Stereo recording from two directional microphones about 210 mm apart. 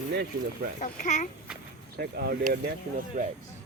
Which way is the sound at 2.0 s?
45° right (ahead or behind).